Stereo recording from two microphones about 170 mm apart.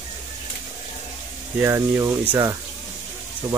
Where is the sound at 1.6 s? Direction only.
15° right (ahead or behind).